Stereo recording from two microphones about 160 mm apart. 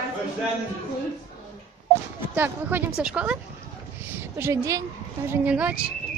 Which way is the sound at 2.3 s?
10° right (ahead or behind).